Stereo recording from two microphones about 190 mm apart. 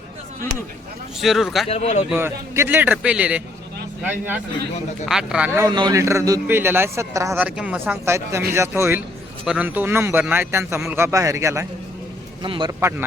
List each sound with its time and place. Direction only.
1.2 s a man's voice: centre (ahead or behind)
1.6 s speech: 35° left (ahead or behind)
2.0 s a man's voice: 10° right (ahead or behind)
5.5 s a man's voice: 20° right (ahead or behind)